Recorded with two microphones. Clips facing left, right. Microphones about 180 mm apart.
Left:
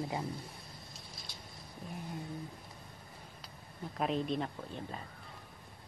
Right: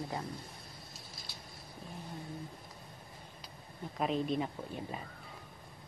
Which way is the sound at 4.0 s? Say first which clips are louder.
Right 1 dB; centre (ahead or behind).